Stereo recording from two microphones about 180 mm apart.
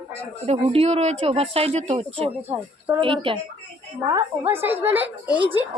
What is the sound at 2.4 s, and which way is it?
Speech, 10° right (ahead or behind).